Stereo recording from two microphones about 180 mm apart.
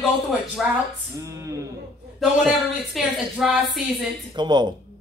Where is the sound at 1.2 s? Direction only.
15° right (ahead or behind).